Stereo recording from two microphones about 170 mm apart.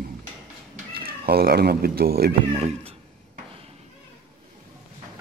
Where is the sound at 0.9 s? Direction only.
65° right (ahead or behind).